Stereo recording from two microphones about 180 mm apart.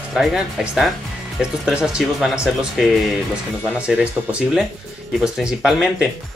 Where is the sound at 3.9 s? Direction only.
5° right (ahead or behind).